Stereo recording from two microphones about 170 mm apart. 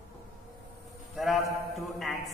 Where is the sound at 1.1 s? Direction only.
Centre (ahead or behind).